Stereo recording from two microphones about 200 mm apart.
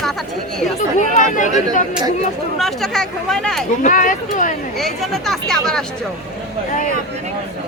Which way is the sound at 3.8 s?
40° left (ahead or behind).